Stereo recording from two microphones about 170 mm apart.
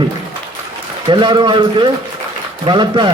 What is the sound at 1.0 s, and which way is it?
A man's voice, 25° right (ahead or behind).